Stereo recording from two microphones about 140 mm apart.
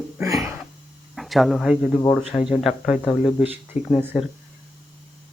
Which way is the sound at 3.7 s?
50° left (ahead or behind).